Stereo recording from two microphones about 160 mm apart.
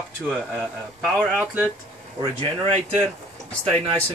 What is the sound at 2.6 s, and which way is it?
Speech, 40° right (ahead or behind).